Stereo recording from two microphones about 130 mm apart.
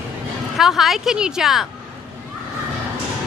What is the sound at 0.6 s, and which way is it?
A woman's voice, 5° right (ahead or behind).